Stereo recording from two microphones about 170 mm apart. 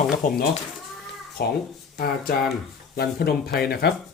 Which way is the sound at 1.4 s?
70° left (ahead or behind).